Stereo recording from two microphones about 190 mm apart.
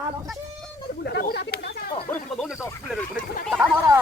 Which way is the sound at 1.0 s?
55° left (ahead or behind).